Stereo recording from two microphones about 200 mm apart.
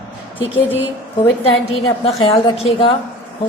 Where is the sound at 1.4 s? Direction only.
30° left (ahead or behind).